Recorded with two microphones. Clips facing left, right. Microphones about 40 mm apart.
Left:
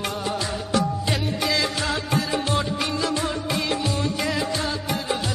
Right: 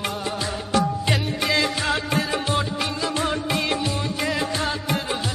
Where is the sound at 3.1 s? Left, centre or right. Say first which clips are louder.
Right 2 dB; right.